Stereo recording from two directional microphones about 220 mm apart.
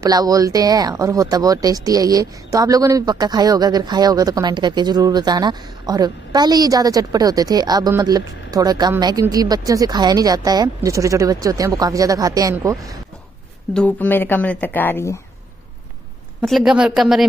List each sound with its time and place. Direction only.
0.0 s speech: 15° right (ahead or behind)
13.7 s speech: 5° left (ahead or behind)
16.3 s speech: centre (ahead or behind)